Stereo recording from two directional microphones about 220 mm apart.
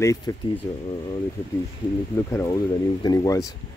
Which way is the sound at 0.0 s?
15° left (ahead or behind).